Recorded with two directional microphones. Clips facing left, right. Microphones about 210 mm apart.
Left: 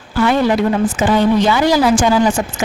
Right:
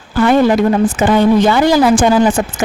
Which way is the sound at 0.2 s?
50° right (ahead or behind).